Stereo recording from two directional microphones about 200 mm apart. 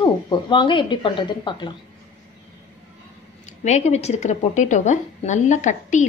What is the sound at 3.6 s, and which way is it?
A woman's voice, 35° left (ahead or behind).